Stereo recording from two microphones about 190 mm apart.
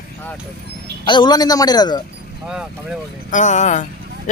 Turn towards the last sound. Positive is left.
turn(degrees=40)  # may be behind; listen again after turning